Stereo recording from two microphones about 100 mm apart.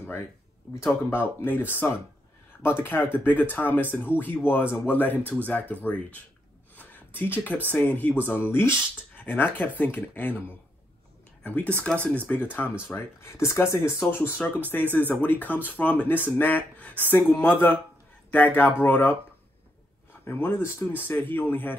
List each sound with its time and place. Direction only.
0.7 s speech: 20° left (ahead or behind)
6.7 s a sound: 15° left (ahead or behind)
7.7 s speech: 15° left (ahead or behind)
11.4 s speech: 15° left (ahead or behind)